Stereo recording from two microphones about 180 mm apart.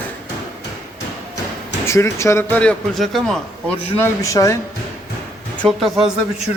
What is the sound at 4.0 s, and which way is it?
Speech, 15° left (ahead or behind).